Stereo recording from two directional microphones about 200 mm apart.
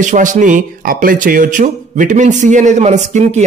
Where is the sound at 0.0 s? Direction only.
40° right (ahead or behind).